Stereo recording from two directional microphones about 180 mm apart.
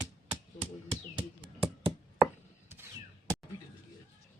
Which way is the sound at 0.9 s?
25° right (ahead or behind).